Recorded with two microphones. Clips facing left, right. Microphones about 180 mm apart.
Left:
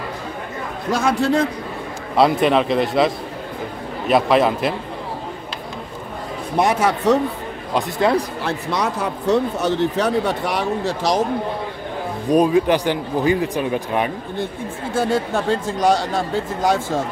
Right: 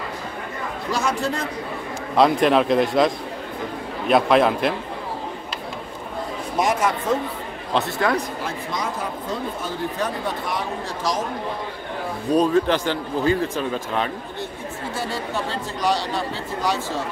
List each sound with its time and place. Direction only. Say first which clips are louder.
0.9 s speech: left 6 dB; 60° left (ahead or behind)
2.1 s a man's voice: left 1 dB; centre (ahead or behind)
4.1 s a man's voice: left 1 dB; centre (ahead or behind)
6.6 s speech: left 4 dB; 65° left (ahead or behind)
8.0 s speech: left 6 dB; 25° left (ahead or behind)
8.4 s speech: left 5 dB; 70° left (ahead or behind)
12.3 s speech: left 3 dB; 10° left (ahead or behind)
15.0 s speech: left 9 dB; 50° left (ahead or behind)